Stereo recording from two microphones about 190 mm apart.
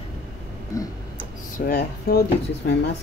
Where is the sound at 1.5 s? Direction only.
50° left (ahead or behind).